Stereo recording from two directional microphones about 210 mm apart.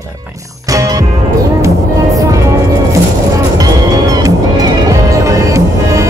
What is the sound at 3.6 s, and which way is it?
Music, 15° right (ahead or behind).